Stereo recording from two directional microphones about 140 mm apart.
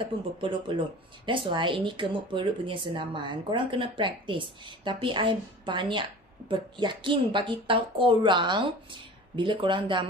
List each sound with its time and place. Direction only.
0.4 s speech: 35° right (ahead or behind)